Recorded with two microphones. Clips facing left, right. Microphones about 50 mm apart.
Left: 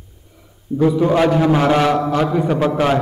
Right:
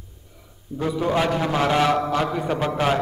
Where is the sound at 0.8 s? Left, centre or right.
Centre.